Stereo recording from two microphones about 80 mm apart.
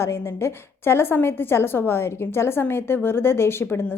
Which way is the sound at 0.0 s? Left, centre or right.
Left.